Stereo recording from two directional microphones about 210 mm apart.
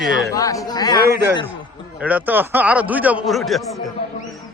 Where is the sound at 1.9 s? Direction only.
5° right (ahead or behind).